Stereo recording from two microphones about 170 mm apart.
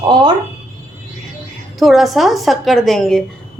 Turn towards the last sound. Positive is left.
turn(degrees=5)  # may be behind; listen again after turning